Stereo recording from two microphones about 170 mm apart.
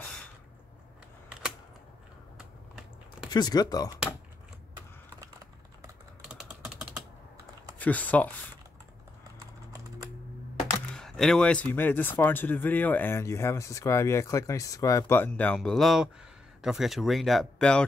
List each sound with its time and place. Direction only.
3.3 s speech: 25° left (ahead or behind)
6.2 s typing: 5° right (ahead or behind)
7.8 s speech: 10° left (ahead or behind)
11.0 s speech: 5° left (ahead or behind)